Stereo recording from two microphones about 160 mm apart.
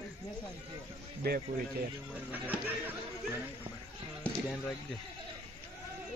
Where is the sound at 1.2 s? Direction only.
75° right (ahead or behind).